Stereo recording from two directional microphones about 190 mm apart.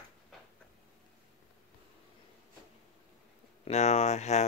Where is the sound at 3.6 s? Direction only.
35° left (ahead or behind).